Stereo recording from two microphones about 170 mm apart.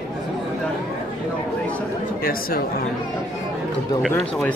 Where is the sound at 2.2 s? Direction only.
60° left (ahead or behind).